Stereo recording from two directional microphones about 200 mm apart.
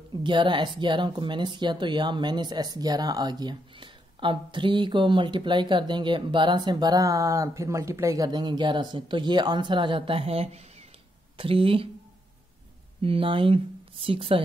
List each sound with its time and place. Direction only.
0.2 s speech: 25° right (ahead or behind)
13.0 s speech: 25° right (ahead or behind)